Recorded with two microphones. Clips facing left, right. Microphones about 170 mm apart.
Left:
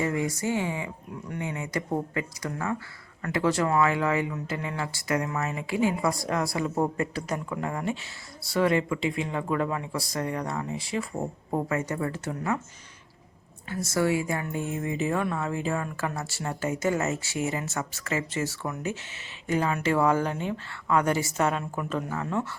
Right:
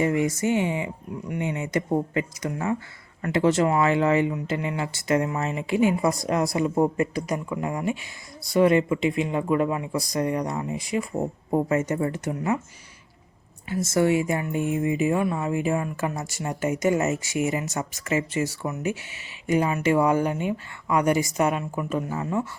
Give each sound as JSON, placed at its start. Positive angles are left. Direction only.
{"t": 0.0, "sound": "speech", "side_deg": -20}
{"t": 13.7, "sound": "speech", "side_deg": -20}